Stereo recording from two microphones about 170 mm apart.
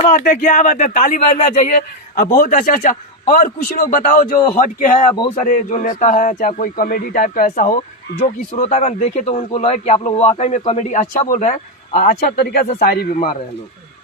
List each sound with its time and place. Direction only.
0.0 s a man's voice: 50° left (ahead or behind); by 13.1 s 65° left (ahead or behind)